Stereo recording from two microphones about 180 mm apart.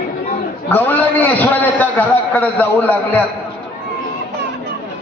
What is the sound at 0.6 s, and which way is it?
A man's voice, 10° left (ahead or behind).